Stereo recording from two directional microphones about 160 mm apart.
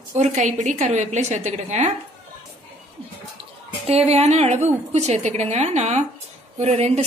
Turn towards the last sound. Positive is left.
turn(degrees=-40)  # may be behind; listen again after turning